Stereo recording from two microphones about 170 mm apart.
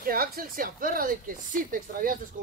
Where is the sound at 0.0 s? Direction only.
60° right (ahead or behind).